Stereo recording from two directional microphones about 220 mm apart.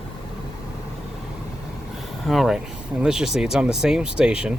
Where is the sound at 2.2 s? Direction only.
Centre (ahead or behind).